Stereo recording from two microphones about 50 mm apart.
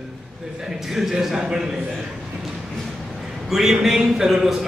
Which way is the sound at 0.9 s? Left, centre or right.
Centre.